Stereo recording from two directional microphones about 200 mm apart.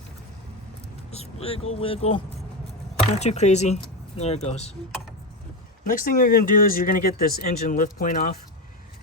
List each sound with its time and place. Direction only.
1.1 s vehicle: 30° left (ahead or behind)
1.8 s speech: 30° left (ahead or behind)
5.8 s speech: 40° left (ahead or behind)